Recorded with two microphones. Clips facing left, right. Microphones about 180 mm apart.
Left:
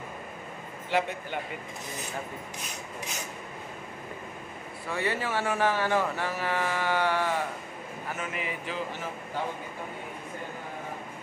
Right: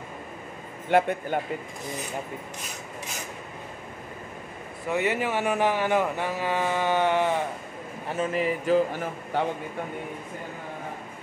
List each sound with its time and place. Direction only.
0.8 s speech: 50° right (ahead or behind)
4.8 s speech: 20° right (ahead or behind)
8.1 s speech: 35° right (ahead or behind)
9.3 s speech: 65° right (ahead or behind)